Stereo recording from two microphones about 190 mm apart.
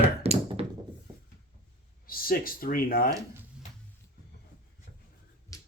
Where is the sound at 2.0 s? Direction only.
50° left (ahead or behind).